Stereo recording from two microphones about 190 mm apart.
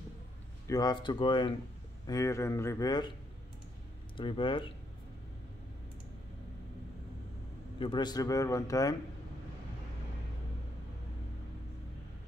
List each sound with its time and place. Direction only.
0.7 s a man's voice: 20° left (ahead or behind)
4.2 s speech: 25° left (ahead or behind)
7.8 s a man's voice: 25° left (ahead or behind)